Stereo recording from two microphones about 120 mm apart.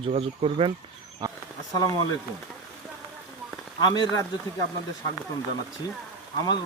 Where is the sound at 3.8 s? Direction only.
35° left (ahead or behind).